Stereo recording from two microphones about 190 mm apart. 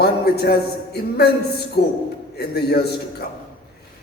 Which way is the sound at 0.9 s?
60° left (ahead or behind).